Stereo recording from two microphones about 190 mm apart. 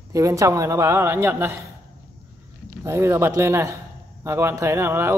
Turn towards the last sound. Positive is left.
turn(degrees=-10)  # may be behind; listen again after turning